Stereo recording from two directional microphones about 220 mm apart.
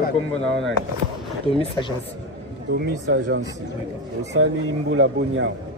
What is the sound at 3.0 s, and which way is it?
Speech, 55° right (ahead or behind).